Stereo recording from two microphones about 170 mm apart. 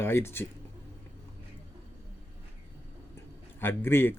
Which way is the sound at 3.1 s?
15° left (ahead or behind).